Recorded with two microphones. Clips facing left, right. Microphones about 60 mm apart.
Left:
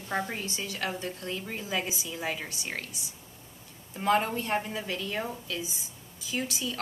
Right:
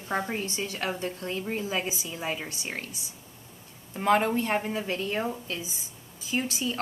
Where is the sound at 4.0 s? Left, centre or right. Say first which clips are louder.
Right 3 dB; right.